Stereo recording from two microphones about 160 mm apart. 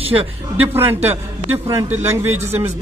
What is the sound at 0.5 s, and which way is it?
A man's voice, 10° right (ahead or behind).